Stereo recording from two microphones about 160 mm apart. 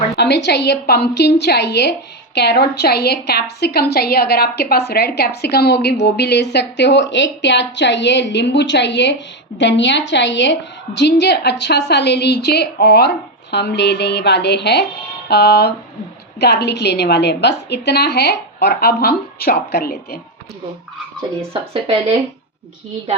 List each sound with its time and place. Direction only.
0.2 s a woman's voice: 90° left; by 20.1 s 75° left (ahead or behind)
21.7 s speech: 40° right (ahead or behind)